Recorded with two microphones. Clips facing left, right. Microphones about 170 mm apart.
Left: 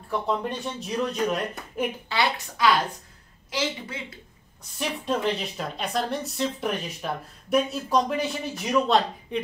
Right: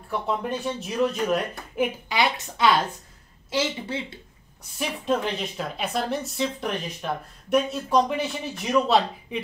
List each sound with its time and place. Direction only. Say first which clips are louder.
0.1 s a woman's voice: even; 5° right (ahead or behind)
2.0 s a woman's voice: right 1 dB; 20° right (ahead or behind)
4.7 s a woman's voice: right 2 dB; centre (ahead or behind)